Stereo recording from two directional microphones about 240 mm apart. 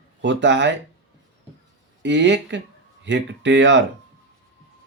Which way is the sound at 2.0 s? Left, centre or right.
Right.